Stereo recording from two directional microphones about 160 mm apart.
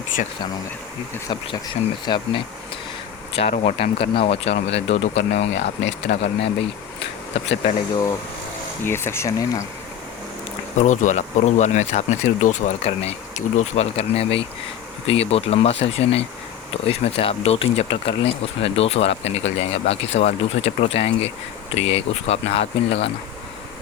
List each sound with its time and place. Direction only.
2.0 s speech: 30° left (ahead or behind)
3.3 s speech: 40° left (ahead or behind)
4.7 s speech: 90° left
7.0 s bee: 90° left
8.8 s speech: 15° left (ahead or behind)
10.8 s speech: 50° left (ahead or behind)